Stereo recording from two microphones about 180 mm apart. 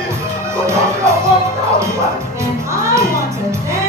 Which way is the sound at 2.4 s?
15° right (ahead or behind).